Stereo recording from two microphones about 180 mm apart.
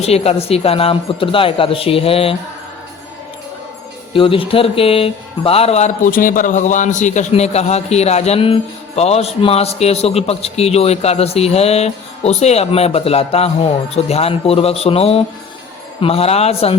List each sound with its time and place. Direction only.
0.0 s a man's voice: 35° left (ahead or behind)
4.1 s a man's voice: 30° left (ahead or behind)